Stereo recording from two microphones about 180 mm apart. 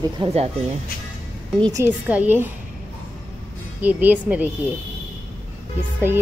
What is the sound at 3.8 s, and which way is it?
Speech, 10° right (ahead or behind).